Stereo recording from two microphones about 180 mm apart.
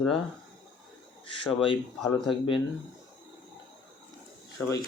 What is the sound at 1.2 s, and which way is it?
Speech, 30° left (ahead or behind).